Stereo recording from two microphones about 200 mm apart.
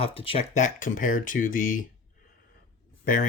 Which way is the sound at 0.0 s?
30° left (ahead or behind).